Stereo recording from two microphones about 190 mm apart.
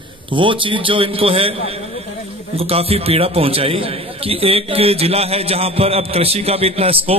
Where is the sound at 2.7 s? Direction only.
30° right (ahead or behind).